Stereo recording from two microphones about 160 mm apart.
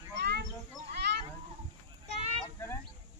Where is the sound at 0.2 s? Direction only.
90° right.